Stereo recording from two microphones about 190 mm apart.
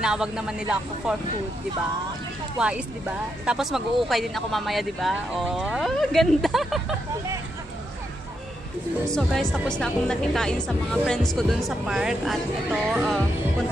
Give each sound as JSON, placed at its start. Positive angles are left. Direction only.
{"t": 0.0, "sound": "speech", "side_deg": -5}
{"t": 2.6, "sound": "speech", "side_deg": -5}
{"t": 9.0, "sound": "speech", "side_deg": 5}